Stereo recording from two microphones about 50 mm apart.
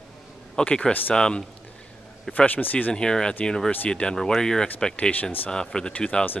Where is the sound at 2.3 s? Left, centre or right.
Left.